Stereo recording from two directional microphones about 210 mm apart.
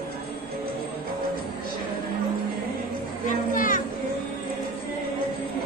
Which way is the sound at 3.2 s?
40° left (ahead or behind).